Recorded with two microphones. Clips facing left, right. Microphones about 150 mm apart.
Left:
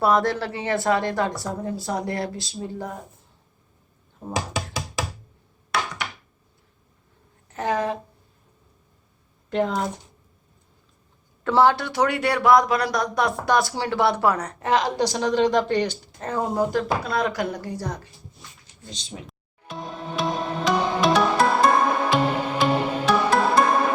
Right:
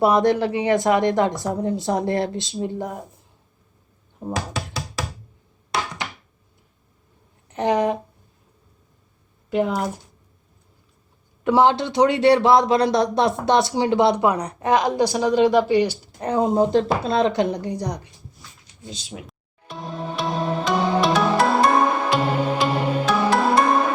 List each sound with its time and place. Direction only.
0.0 s speech: 20° right (ahead or behind)
4.4 s music: 20° left (ahead or behind)
7.5 s a sound: 20° right (ahead or behind)
9.5 s speech: 10° right (ahead or behind)
11.4 s speech: 20° right (ahead or behind)
18.9 s music: 5° right (ahead or behind)